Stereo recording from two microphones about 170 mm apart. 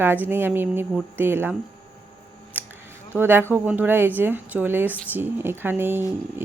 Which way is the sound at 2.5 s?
10° right (ahead or behind).